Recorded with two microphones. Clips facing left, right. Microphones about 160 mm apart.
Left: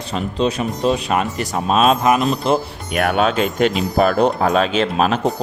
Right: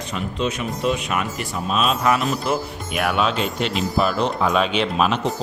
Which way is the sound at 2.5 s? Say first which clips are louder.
Left 5 dB; 50° left (ahead or behind).